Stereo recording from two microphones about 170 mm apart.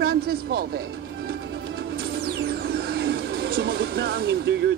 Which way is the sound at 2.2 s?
70° right (ahead or behind).